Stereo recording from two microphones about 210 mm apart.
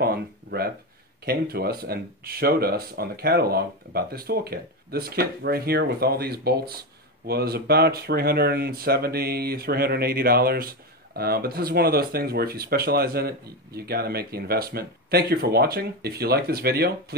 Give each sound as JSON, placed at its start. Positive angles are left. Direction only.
{"t": 0.0, "sound": "speech", "side_deg": -45}